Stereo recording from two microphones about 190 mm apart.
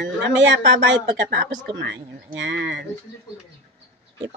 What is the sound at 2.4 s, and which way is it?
Speech, 60° right (ahead or behind).